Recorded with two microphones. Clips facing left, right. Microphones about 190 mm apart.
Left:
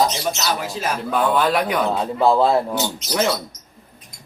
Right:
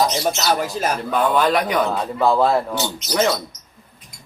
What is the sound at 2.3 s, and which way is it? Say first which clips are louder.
Speech: left 1 dB; 20° left (ahead or behind).